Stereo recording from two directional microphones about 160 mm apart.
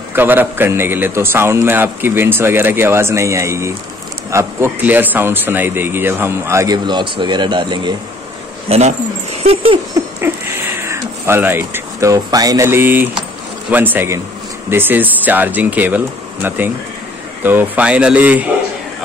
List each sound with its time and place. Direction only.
0.1 s a man's voice: 10° right (ahead or behind); by 7.9 s 30° right (ahead or behind)
8.6 s speech: 40° right (ahead or behind)
9.4 s dog: 35° right (ahead or behind)
10.2 s a man's voice: 15° right (ahead or behind)